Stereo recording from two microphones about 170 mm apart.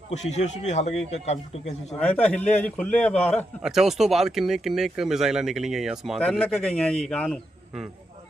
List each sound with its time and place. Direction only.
0.3 s a man's voice: 40° left (ahead or behind)
2.0 s a man's voice: 10° left (ahead or behind)